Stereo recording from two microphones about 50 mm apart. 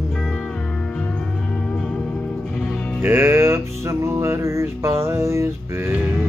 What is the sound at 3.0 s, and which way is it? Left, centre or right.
Music, right.